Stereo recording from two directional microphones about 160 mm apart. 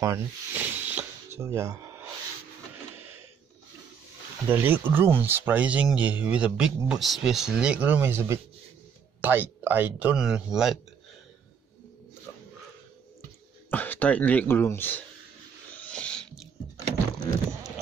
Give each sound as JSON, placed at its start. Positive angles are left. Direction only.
{"t": 0.0, "sound": "snake", "side_deg": -20}
{"t": 4.5, "sound": "speech", "side_deg": -10}
{"t": 13.7, "sound": "speech", "side_deg": 10}
{"t": 15.7, "sound": "a sound", "side_deg": 10}